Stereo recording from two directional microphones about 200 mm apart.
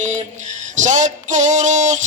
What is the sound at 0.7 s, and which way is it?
Female singing, 40° right (ahead or behind).